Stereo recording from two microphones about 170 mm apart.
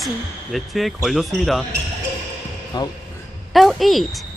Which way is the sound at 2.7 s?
25° left (ahead or behind).